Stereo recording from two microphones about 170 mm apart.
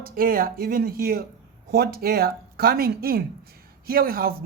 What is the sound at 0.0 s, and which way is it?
Speech, 60° right (ahead or behind).